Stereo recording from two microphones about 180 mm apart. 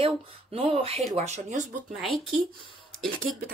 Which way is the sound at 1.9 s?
Centre (ahead or behind).